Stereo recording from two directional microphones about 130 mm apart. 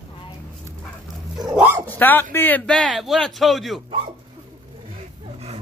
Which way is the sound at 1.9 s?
15° left (ahead or behind).